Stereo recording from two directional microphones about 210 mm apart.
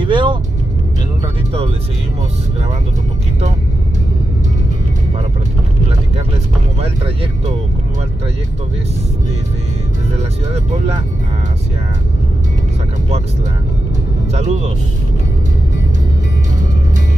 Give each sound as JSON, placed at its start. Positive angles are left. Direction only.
{"t": 0.0, "sound": "music", "side_deg": -20}
{"t": 10.1, "sound": "speech", "side_deg": -30}
{"t": 14.3, "sound": "speech", "side_deg": -30}